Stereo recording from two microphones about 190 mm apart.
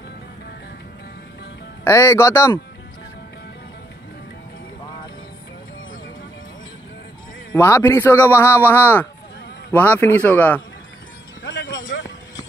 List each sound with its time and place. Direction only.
1.9 s a man's voice: 15° left (ahead or behind)
7.5 s a man's voice: 15° left (ahead or behind)
11.7 s vehicle: 70° left (ahead or behind)